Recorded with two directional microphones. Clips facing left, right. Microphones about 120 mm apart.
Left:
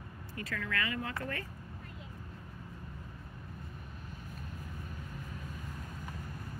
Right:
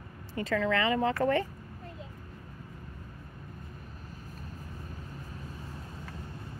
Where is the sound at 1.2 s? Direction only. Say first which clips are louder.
Right 13 dB; 90° right.